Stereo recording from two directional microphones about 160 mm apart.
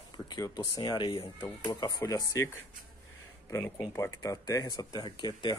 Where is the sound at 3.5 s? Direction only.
15° left (ahead or behind).